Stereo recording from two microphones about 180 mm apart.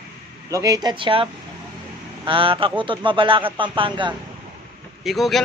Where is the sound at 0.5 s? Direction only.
20° right (ahead or behind).